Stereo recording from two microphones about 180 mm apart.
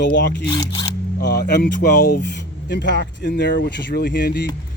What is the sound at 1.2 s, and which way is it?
Speech, 70° left (ahead or behind).